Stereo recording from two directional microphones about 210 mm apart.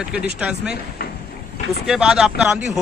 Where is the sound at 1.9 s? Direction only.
Centre (ahead or behind).